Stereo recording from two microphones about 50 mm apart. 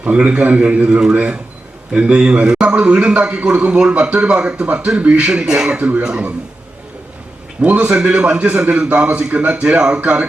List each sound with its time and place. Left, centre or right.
0.0 s a man's voice: right
7.6 s a man's voice: right